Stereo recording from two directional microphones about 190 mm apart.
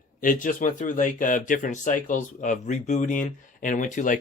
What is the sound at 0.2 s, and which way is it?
Speech, 45° left (ahead or behind).